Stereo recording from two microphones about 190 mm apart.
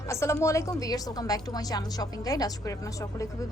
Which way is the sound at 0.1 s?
15° left (ahead or behind).